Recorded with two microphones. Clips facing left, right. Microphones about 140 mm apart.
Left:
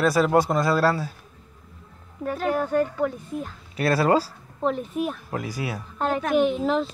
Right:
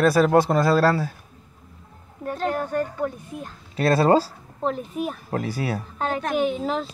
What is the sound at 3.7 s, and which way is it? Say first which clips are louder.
Speech: right 3 dB; 25° right (ahead or behind).